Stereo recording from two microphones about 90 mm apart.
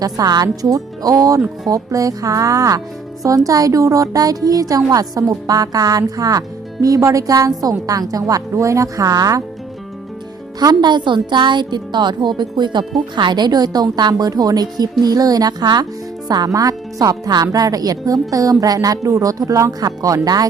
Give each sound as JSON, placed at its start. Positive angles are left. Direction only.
{"t": 0.0, "sound": "speech", "side_deg": -45}
{"t": 10.6, "sound": "a woman's voice", "side_deg": -50}